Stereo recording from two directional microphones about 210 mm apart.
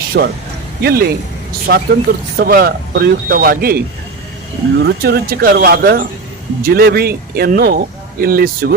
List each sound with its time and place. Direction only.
0.1 s speech: 50° right (ahead or behind)